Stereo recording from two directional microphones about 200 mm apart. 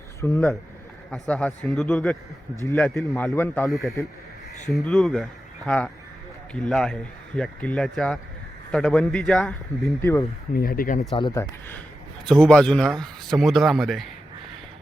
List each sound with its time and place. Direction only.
0.2 s a man's voice: 15° left (ahead or behind)
9.8 s a man's voice: 15° left (ahead or behind)
10.5 s speech: 45° left (ahead or behind)
11.1 s speech: 20° left (ahead or behind)
12.3 s speech: 5° left (ahead or behind)